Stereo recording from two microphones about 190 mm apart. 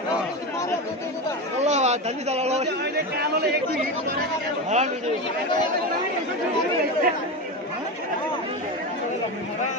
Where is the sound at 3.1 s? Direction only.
55° right (ahead or behind).